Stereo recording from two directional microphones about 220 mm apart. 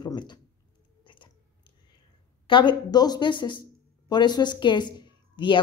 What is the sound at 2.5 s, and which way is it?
Speech, 20° left (ahead or behind).